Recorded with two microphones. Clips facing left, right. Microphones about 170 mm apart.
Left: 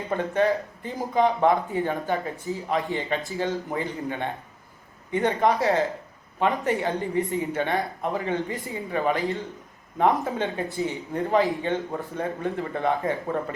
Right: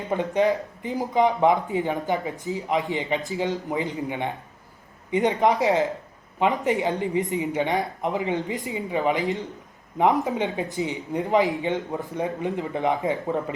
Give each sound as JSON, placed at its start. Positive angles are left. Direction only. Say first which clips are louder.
{"t": 0.1, "sound": "speech", "louder": "right 1 dB", "side_deg": -15}